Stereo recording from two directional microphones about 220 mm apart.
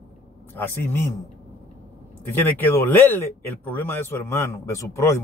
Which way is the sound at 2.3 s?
10° left (ahead or behind).